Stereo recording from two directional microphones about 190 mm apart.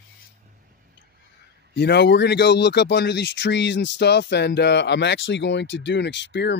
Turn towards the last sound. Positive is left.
turn(degrees=65)  # may be behind; listen again after turning